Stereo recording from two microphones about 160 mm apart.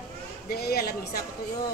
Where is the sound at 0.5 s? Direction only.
75° left (ahead or behind).